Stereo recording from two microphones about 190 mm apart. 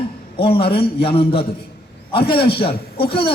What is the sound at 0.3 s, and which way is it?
A man's voice, 30° left (ahead or behind).